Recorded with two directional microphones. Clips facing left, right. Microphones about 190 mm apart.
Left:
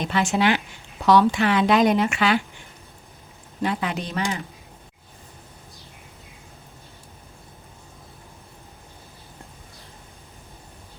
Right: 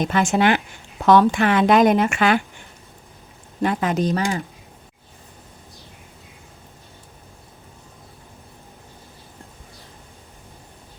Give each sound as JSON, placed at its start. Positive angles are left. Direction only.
{"t": 0.0, "sound": "speech", "side_deg": -45}
{"t": 3.6, "sound": "speech", "side_deg": -45}